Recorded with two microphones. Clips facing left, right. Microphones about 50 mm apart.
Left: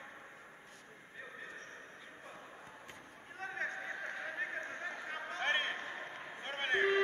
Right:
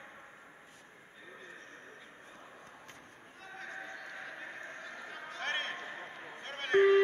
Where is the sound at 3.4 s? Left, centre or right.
Left.